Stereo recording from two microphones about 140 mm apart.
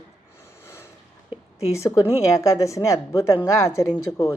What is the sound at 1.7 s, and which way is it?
A woman's voice, 20° left (ahead or behind).